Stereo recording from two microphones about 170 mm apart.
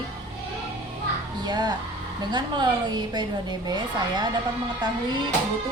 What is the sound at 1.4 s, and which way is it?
A woman's voice, 25° right (ahead or behind).